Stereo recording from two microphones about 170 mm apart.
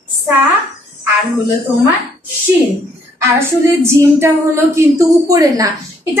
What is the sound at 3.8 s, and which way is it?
A woman's voice, 15° right (ahead or behind).